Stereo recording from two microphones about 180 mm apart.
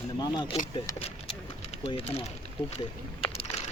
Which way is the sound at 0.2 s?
25° left (ahead or behind).